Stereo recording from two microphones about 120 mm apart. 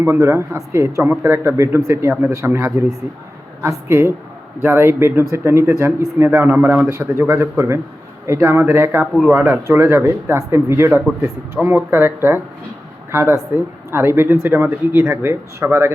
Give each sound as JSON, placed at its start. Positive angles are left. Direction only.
{"t": 0.0, "sound": "a man's voice", "side_deg": -20}